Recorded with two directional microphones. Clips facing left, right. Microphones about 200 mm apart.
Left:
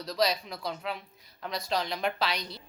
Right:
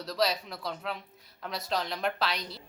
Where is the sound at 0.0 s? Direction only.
5° right (ahead or behind).